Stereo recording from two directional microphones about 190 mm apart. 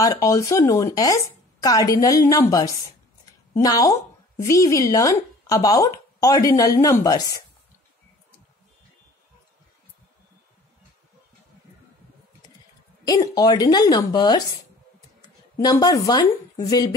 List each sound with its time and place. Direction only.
0.0 s a woman's voice: 15° left (ahead or behind)
13.0 s a woman's voice: 20° left (ahead or behind)